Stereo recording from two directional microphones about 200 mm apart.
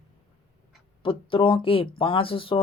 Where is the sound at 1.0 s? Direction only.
25° left (ahead or behind).